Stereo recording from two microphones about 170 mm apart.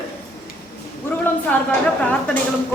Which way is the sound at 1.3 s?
10° left (ahead or behind).